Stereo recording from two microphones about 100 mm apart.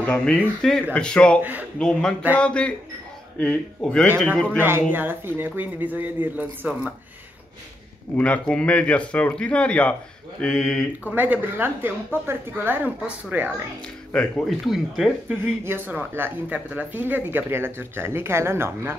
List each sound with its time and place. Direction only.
0.0 s speech: 10° left (ahead or behind)
1.4 s a woman's voice: 15° right (ahead or behind)
1.8 s speech: 5° left (ahead or behind)
4.6 s speech: 20° right (ahead or behind)
8.2 s speech: 15° left (ahead or behind)
11.1 s a woman's voice: 15° right (ahead or behind)
14.1 s speech: 10° left (ahead or behind)
14.7 s speech: 5° right (ahead or behind)
15.6 s speech: 20° right (ahead or behind)